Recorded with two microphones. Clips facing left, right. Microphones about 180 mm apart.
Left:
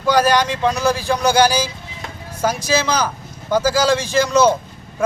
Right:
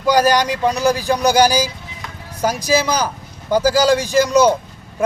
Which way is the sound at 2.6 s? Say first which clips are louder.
Right 3 dB; 15° right (ahead or behind).